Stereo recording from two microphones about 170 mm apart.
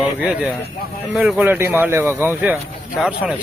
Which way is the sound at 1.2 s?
10° right (ahead or behind).